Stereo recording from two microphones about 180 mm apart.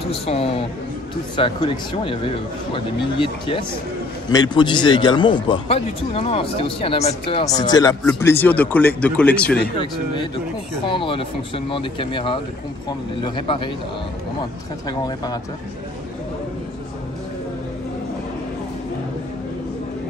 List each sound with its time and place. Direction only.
0.0 s a man's voice: 30° left (ahead or behind)
7.4 s speech: 20° left (ahead or behind); by 9.6 s 5° left (ahead or behind)
9.8 s speech: 25° left (ahead or behind)
14.9 s speech: 20° left (ahead or behind)